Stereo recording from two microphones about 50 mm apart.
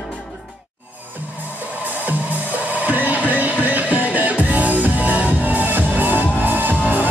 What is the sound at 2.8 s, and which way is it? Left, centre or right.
Music, right.